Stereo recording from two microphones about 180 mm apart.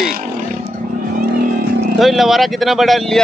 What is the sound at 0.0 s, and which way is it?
Vehicle, 50° right (ahead or behind).